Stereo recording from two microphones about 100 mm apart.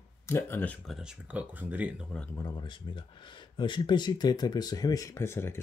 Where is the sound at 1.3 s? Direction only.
15° right (ahead or behind).